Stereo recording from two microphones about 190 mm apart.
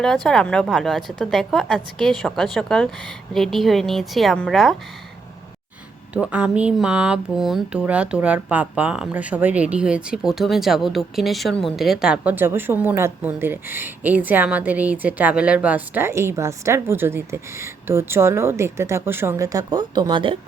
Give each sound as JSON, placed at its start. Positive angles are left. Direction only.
{"t": 0.0, "sound": "a woman's voice", "side_deg": 5}
{"t": 6.1, "sound": "speech", "side_deg": -5}